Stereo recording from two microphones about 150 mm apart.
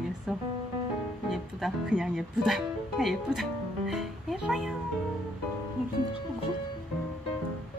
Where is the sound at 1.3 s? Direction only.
5° right (ahead or behind).